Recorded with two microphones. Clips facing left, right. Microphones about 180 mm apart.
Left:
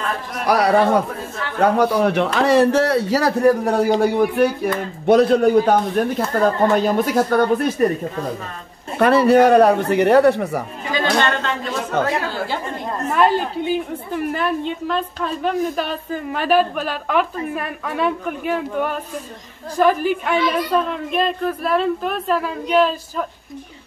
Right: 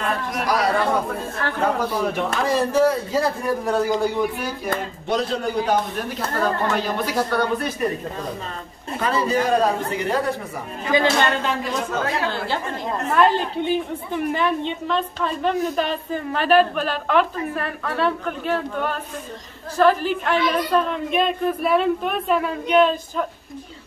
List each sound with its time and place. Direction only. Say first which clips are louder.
0.5 s a man's voice: left 6 dB; 65° left (ahead or behind); by 7.9 s 45° left (ahead or behind)
8.9 s a man's voice: left 8 dB; 65° left (ahead or behind)
10.9 s speech: right 1 dB; 15° right (ahead or behind)
13.1 s a woman's voice: left 1 dB; 10° left (ahead or behind)